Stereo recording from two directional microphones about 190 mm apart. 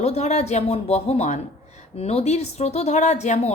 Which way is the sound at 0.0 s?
35° left (ahead or behind).